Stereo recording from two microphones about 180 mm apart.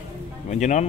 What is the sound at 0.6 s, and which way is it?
Speech, 40° left (ahead or behind).